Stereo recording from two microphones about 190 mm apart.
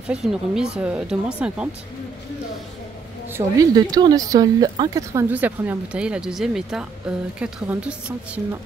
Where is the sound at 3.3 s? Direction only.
20° right (ahead or behind).